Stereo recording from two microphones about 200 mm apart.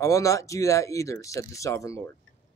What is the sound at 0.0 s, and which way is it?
Speech, 15° left (ahead or behind).